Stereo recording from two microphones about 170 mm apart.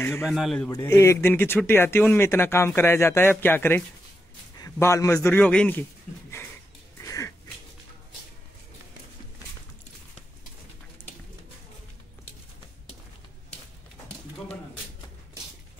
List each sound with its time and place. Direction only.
0.2 s a man's voice: centre (ahead or behind)
0.7 s a man's voice: 15° left (ahead or behind)
5.4 s speech: 5° left (ahead or behind)
7.0 s wheeze: 20° left (ahead or behind)